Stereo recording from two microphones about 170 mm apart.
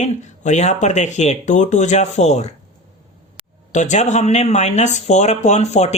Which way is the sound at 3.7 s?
45° left (ahead or behind).